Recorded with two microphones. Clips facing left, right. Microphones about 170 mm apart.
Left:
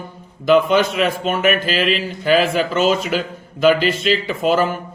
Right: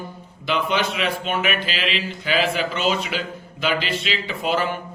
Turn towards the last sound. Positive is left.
turn(degrees=45)  # may be behind; listen again after turning